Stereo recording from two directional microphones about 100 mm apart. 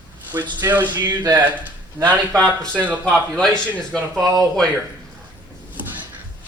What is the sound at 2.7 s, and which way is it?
Speech, 15° right (ahead or behind).